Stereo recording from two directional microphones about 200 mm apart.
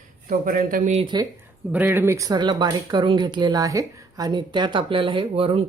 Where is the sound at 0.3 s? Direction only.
45° right (ahead or behind).